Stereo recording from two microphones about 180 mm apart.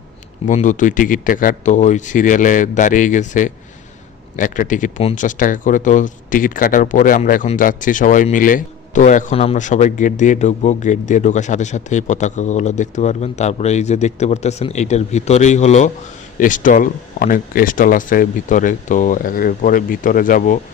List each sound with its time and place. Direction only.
0.4 s a man's voice: 45° left (ahead or behind)